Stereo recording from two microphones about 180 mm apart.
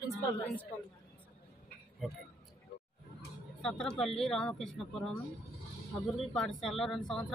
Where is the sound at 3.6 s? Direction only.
5° left (ahead or behind).